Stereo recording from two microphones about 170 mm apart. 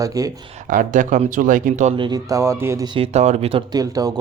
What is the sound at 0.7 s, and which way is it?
Speech, 50° right (ahead or behind).